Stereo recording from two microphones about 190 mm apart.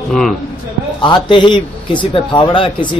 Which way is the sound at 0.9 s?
25° left (ahead or behind).